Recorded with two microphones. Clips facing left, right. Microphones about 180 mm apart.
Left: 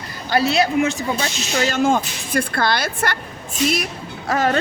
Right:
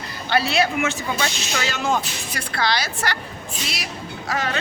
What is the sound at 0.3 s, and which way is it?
Speech, 40° left (ahead or behind).